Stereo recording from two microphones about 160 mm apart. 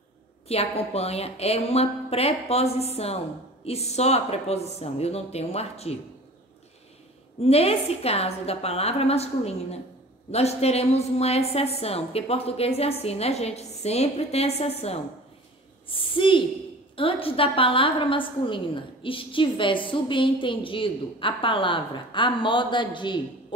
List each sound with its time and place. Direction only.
0.5 s a woman's voice: 40° left (ahead or behind)
7.4 s a woman's voice: 40° left (ahead or behind)